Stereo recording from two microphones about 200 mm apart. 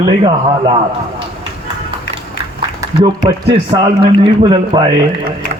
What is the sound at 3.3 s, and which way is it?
A man's voice, 25° right (ahead or behind).